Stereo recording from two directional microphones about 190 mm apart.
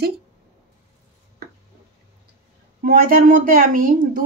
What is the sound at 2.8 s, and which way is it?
Speech, 45° right (ahead or behind).